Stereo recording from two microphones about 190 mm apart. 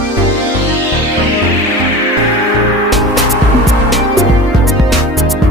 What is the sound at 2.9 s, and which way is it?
Music, centre (ahead or behind).